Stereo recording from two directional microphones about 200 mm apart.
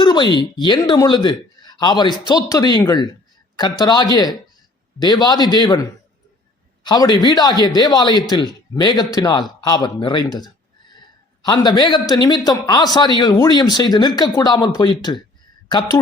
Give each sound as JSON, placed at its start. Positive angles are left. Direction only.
{"t": 0.0, "sound": "a man's voice", "side_deg": 20}